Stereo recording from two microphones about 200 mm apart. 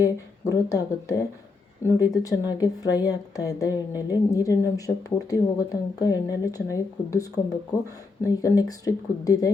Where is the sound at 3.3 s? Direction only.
20° left (ahead or behind).